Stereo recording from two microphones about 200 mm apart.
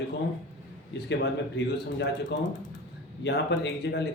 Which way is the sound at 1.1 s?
60° left (ahead or behind).